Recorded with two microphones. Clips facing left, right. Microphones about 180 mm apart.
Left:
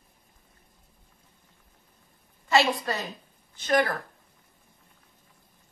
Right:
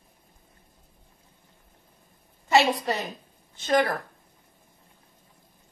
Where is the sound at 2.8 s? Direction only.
25° right (ahead or behind).